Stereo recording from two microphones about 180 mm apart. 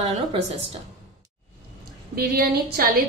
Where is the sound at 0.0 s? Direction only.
25° right (ahead or behind).